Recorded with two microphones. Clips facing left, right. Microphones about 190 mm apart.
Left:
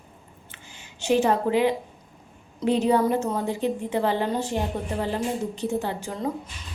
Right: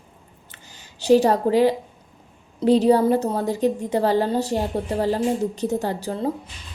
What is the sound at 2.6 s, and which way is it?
A woman's voice, 35° right (ahead or behind).